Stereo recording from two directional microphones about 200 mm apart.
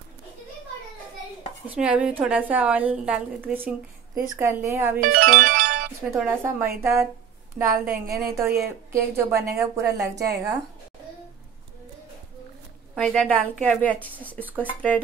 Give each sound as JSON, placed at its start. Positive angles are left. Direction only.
{"t": 1.7, "sound": "a woman's voice", "side_deg": -5}
{"t": 5.0, "sound": "speech", "side_deg": -45}
{"t": 6.0, "sound": "a woman's voice", "side_deg": -10}
{"t": 12.9, "sound": "a woman's voice", "side_deg": 0}
{"t": 14.4, "sound": "a woman's voice", "side_deg": -10}